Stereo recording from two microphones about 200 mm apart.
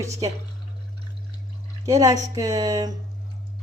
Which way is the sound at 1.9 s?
15° right (ahead or behind).